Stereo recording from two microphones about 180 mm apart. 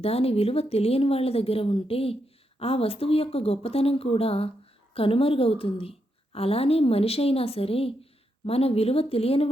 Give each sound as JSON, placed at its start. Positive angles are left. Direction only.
{"t": 0.0, "sound": "a woman's voice", "side_deg": 35}